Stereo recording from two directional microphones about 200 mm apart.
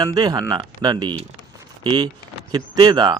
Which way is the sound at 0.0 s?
20° right (ahead or behind).